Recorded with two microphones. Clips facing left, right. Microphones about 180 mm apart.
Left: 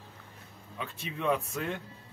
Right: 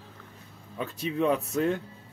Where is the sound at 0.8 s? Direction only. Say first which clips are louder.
Right 7 dB; 40° right (ahead or behind).